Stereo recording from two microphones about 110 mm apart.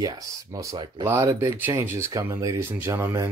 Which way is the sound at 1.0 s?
25° right (ahead or behind).